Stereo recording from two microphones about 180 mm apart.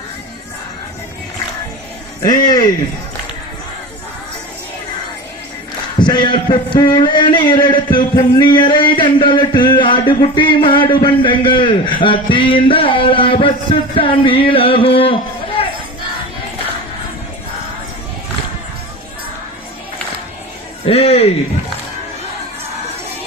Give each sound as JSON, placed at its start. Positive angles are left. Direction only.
{"t": 2.2, "sound": "a man's voice", "side_deg": 20}
{"t": 6.0, "sound": "a man's voice", "side_deg": 25}
{"t": 20.8, "sound": "speech", "side_deg": 35}